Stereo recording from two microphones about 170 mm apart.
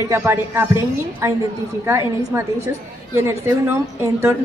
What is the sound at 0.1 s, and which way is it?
Speech, 15° right (ahead or behind).